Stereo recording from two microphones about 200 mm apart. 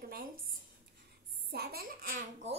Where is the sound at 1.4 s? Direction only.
50° right (ahead or behind).